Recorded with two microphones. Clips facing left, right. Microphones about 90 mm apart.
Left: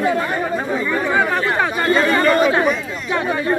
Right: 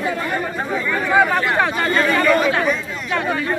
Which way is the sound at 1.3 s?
Centre (ahead or behind).